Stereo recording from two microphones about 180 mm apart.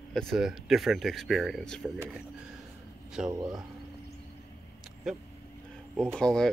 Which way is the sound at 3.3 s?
20° right (ahead or behind).